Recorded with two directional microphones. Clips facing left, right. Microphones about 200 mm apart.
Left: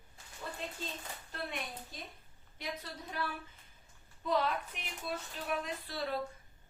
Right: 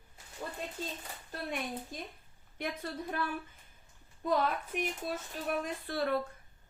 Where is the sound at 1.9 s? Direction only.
50° right (ahead or behind).